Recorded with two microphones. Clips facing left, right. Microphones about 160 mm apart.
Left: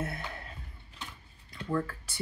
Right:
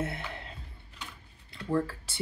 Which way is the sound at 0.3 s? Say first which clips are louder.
Right 2 dB; 25° right (ahead or behind).